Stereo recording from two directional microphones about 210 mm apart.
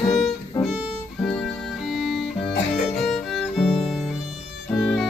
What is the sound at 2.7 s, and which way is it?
Music, 30° left (ahead or behind).